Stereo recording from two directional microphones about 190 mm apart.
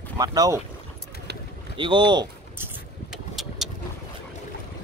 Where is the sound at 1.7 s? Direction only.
25° right (ahead or behind).